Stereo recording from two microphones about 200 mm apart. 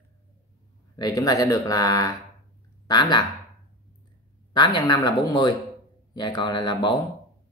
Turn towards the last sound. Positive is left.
turn(degrees=20)  # may be behind; listen again after turning